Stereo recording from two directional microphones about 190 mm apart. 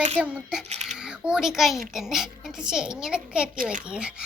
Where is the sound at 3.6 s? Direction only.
45° right (ahead or behind).